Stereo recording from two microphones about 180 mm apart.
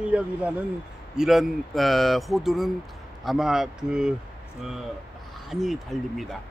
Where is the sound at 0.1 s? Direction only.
5° right (ahead or behind).